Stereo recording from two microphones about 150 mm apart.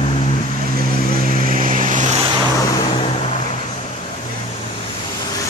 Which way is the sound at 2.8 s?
40° left (ahead or behind).